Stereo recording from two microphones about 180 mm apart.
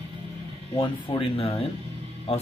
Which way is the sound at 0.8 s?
30° left (ahead or behind).